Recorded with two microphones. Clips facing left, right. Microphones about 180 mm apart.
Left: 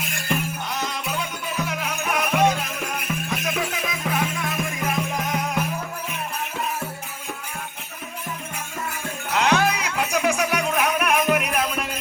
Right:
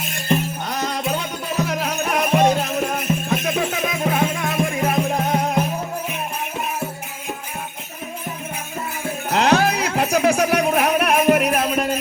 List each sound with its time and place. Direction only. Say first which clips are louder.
0.7 s music: right 8 dB; 40° right (ahead or behind)
3.1 s music: right 6 dB; 30° right (ahead or behind)
9.3 s music: right 4 dB; 35° right (ahead or behind)